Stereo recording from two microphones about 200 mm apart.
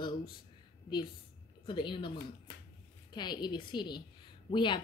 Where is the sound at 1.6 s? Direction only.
25° left (ahead or behind).